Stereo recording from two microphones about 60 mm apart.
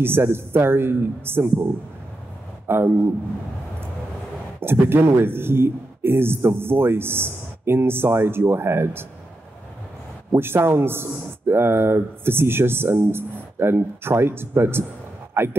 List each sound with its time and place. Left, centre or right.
0.0 s speech: right
2.7 s speech: right
4.6 s speech: right
10.3 s a man's voice: right